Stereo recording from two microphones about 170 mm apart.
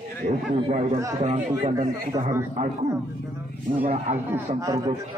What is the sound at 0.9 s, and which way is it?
Speech, 20° right (ahead or behind).